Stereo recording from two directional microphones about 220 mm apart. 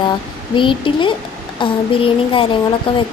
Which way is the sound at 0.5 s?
20° left (ahead or behind).